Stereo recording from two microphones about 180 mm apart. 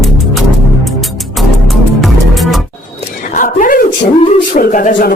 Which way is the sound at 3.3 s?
45° left (ahead or behind).